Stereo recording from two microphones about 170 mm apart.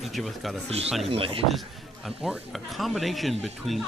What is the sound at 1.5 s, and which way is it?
Speech, centre (ahead or behind).